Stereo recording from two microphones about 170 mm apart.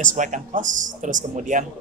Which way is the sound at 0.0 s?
45° right (ahead or behind).